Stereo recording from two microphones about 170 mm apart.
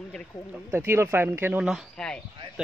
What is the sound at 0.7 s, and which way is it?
Speech, 15° right (ahead or behind).